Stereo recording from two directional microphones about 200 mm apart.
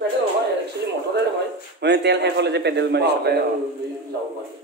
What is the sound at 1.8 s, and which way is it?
A man's voice, 60° right (ahead or behind).